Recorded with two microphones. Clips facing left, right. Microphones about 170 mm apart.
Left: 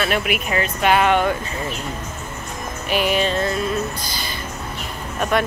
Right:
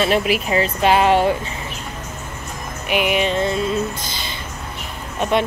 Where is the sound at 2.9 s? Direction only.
15° right (ahead or behind).